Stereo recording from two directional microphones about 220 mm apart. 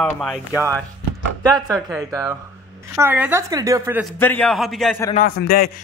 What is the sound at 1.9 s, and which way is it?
A woman's voice, 15° right (ahead or behind).